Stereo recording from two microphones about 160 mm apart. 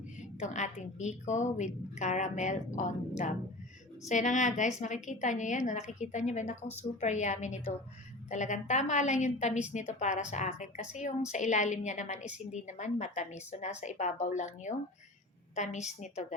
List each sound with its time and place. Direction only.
0.3 s a woman's voice: 50° left (ahead or behind)